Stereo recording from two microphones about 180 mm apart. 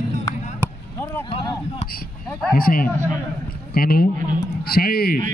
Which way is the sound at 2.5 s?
55° left (ahead or behind).